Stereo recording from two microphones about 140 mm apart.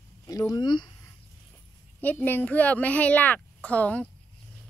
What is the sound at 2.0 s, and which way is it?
A woman's voice, 15° left (ahead or behind).